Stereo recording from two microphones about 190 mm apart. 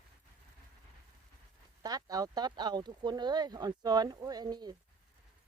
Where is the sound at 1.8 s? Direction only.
20° right (ahead or behind).